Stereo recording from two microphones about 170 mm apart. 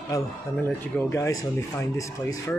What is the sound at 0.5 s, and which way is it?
Speech, 15° left (ahead or behind).